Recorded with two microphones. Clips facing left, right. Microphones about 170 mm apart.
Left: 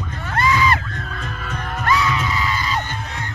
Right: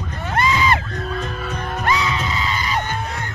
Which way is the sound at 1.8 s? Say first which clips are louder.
Left 2 dB; 20° right (ahead or behind).